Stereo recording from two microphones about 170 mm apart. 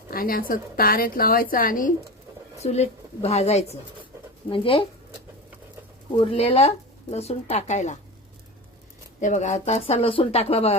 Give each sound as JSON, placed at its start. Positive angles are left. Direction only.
{"t": 0.1, "sound": "a woman's voice", "side_deg": 60}
{"t": 2.6, "sound": "speech", "side_deg": 40}
{"t": 6.1, "sound": "speech", "side_deg": 35}
{"t": 9.2, "sound": "speech", "side_deg": 45}